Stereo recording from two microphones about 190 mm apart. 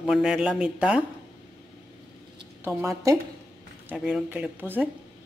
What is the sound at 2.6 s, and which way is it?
Speech, 15° right (ahead or behind).